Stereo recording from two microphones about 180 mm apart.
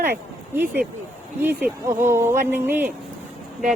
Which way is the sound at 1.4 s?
10° right (ahead or behind).